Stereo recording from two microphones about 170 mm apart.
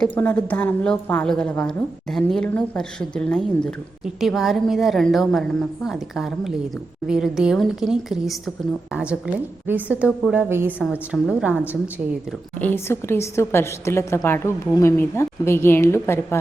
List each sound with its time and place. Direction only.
0.0 s a woman's voice: 10° left (ahead or behind); by 11.8 s 10° right (ahead or behind)
12.5 s a woman's voice: 10° left (ahead or behind)